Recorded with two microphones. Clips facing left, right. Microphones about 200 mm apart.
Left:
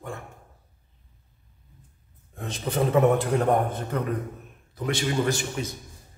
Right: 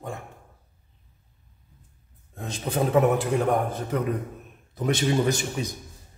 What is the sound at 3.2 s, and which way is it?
Speech, centre (ahead or behind).